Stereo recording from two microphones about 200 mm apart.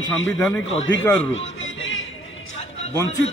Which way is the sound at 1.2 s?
70° left (ahead or behind).